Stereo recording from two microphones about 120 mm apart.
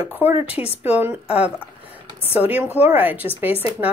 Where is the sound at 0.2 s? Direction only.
15° right (ahead or behind).